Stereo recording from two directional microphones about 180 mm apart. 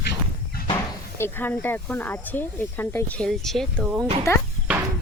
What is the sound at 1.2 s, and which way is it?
Speech, 10° left (ahead or behind).